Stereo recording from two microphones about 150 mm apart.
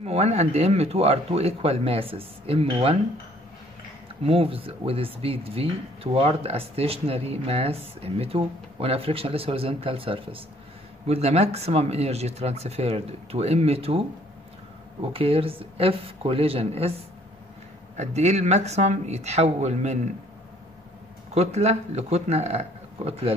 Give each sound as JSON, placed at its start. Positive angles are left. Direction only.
{"t": 0.0, "sound": "speech", "side_deg": -45}
{"t": 4.2, "sound": "speech", "side_deg": -40}
{"t": 17.9, "sound": "speech", "side_deg": -50}
{"t": 21.4, "sound": "speech", "side_deg": -45}